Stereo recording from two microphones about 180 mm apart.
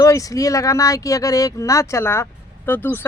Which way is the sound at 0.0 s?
20° left (ahead or behind).